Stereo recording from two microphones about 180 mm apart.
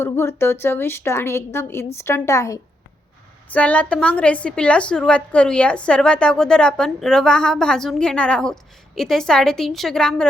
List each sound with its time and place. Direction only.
0.0 s a woman's voice: 15° left (ahead or behind)